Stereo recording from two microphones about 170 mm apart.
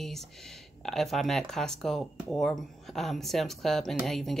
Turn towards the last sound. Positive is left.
turn(degrees=0)  # may be behind; listen again after turning